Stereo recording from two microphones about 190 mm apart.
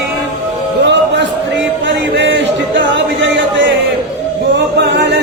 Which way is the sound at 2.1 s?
70° right (ahead or behind).